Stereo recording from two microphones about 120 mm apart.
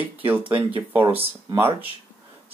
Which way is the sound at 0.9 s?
15° right (ahead or behind).